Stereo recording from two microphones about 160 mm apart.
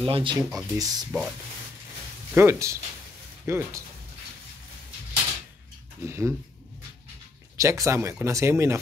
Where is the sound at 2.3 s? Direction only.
15° right (ahead or behind).